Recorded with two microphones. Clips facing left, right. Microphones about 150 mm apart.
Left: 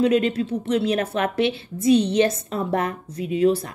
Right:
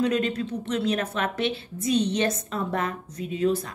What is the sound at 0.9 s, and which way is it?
A woman's voice, 35° left (ahead or behind).